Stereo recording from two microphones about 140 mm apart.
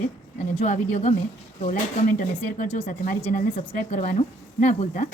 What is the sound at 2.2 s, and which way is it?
Speech, 70° left (ahead or behind).